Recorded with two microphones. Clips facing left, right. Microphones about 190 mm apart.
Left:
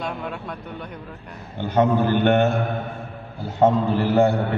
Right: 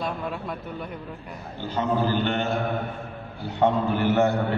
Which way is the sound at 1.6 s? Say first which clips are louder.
Left 6 dB; 60° left (ahead or behind).